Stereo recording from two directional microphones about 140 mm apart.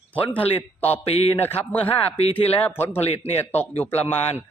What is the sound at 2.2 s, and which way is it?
Speech, 45° left (ahead or behind).